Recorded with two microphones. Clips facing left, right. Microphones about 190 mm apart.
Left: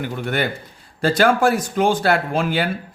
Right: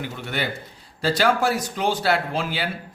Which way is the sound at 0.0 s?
50° left (ahead or behind).